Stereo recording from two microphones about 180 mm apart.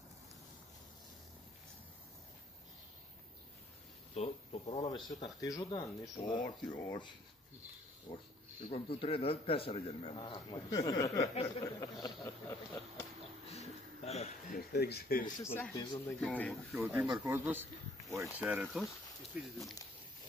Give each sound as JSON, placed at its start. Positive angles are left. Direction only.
{"t": 4.1, "sound": "speech", "side_deg": 35}
{"t": 4.8, "sound": "a man's voice", "side_deg": 25}
{"t": 13.5, "sound": "a sound", "side_deg": 35}
{"t": 14.5, "sound": "speech", "side_deg": 60}
{"t": 15.4, "sound": "speech", "side_deg": 15}
{"t": 16.7, "sound": "speech", "side_deg": -15}